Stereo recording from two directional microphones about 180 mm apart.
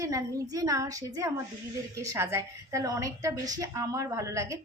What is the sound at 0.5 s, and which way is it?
A woman's voice, 20° right (ahead or behind).